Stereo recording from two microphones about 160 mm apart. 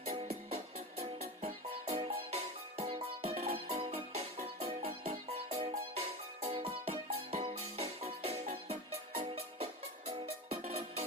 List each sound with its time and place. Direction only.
0.0 s music: 40° right (ahead or behind)